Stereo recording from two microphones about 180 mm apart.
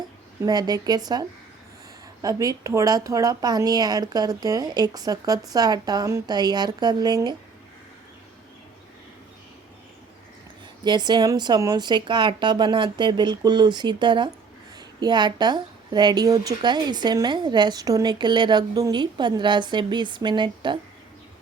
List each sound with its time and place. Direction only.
0.4 s a woman's voice: 20° right (ahead or behind)
2.2 s a woman's voice: 20° right (ahead or behind)
10.8 s a woman's voice: 25° right (ahead or behind)